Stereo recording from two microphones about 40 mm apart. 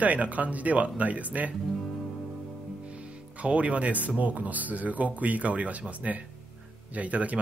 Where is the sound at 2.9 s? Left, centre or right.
Right.